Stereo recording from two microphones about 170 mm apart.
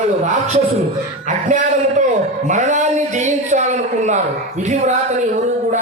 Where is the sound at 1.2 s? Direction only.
50° right (ahead or behind).